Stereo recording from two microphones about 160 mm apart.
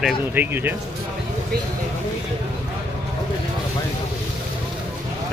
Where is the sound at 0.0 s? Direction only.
10° right (ahead or behind).